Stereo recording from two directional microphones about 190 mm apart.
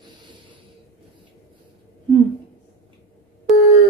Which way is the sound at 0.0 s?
25° right (ahead or behind).